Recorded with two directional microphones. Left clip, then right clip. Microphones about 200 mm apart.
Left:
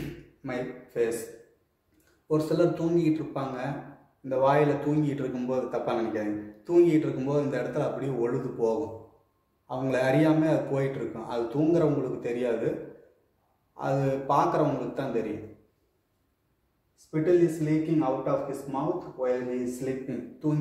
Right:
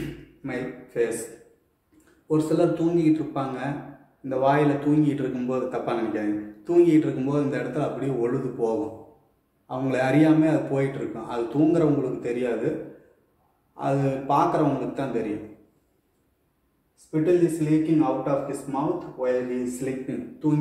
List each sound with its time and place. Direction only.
0.4 s speech: 15° left (ahead or behind)
2.2 s a man's voice: 10° left (ahead or behind)
13.7 s a man's voice: 10° left (ahead or behind)
17.1 s a man's voice: 20° left (ahead or behind)
19.8 s a man's voice: 15° left (ahead or behind)